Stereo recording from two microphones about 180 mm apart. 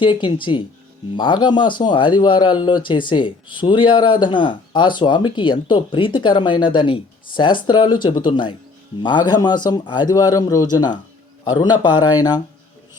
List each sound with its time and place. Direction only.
0.0 s speech: 25° left (ahead or behind)